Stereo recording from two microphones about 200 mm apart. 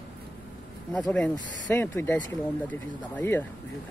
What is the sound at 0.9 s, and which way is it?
Speech, 5° left (ahead or behind).